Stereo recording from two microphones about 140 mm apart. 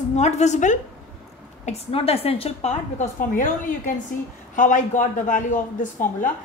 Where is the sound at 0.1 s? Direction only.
55° left (ahead or behind).